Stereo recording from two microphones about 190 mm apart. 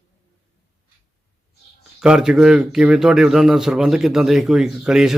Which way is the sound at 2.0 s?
5° right (ahead or behind).